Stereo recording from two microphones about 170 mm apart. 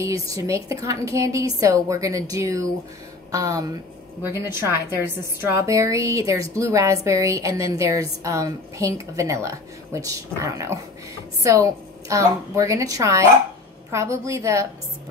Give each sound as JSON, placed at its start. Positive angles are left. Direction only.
{"t": 0.0, "sound": "a woman's voice", "side_deg": -20}